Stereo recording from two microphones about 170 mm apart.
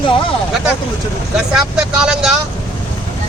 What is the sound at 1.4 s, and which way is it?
Speech, 5° right (ahead or behind).